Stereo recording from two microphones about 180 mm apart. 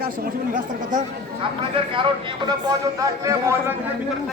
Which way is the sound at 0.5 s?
45° right (ahead or behind).